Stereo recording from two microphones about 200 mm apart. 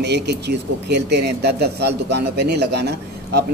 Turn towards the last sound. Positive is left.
turn(degrees=-55)  # may be behind; listen again after turning